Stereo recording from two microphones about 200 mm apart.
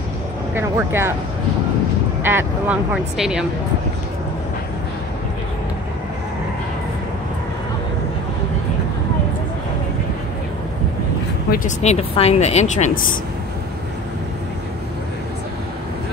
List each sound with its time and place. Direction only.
0.6 s speech: 10° right (ahead or behind)
2.2 s speech: 10° right (ahead or behind)
11.5 s speech: 35° left (ahead or behind)